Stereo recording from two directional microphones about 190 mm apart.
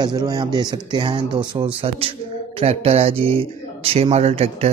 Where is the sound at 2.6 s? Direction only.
35° right (ahead or behind).